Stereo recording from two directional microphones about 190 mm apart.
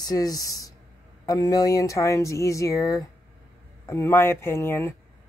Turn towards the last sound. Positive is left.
turn(degrees=10)  # may be behind; listen again after turning